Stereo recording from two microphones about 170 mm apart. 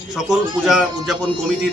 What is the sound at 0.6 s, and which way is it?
Speech, centre (ahead or behind).